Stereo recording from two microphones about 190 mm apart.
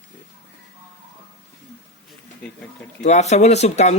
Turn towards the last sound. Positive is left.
turn(degrees=35)  # may be behind; listen again after turning